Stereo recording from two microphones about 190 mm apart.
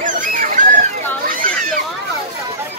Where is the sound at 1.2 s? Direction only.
45° right (ahead or behind).